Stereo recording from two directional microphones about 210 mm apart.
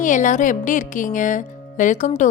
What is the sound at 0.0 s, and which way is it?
A woman's voice, 35° left (ahead or behind).